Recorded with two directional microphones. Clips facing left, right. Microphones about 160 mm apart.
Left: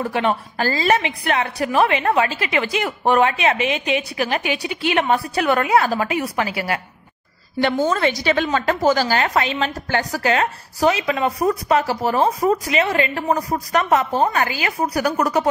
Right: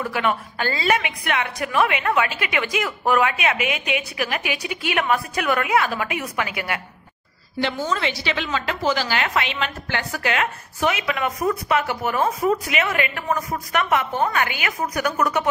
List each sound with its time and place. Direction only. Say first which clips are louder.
0.0 s a woman's voice: left 3 dB; 30° left (ahead or behind)
7.6 s a woman's voice: left 6 dB; 50° left (ahead or behind); by 15.4 s 35° left (ahead or behind)